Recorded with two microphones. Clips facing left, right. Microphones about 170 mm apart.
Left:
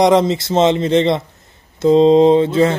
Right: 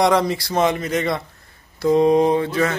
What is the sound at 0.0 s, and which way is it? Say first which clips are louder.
Speech: left 5 dB; 20° left (ahead or behind).